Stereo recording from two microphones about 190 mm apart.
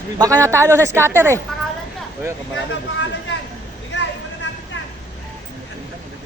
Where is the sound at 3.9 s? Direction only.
70° left (ahead or behind).